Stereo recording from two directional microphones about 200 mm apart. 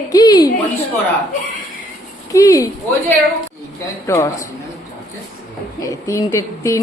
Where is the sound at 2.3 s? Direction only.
15° left (ahead or behind).